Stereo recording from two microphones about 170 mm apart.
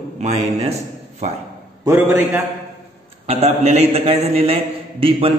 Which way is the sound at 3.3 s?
40° right (ahead or behind).